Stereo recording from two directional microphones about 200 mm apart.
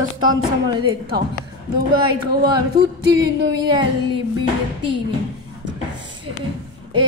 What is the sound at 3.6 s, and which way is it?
Speech, 20° right (ahead or behind).